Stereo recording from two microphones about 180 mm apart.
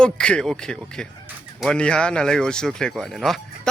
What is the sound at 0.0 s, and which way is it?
Speech, 5° left (ahead or behind).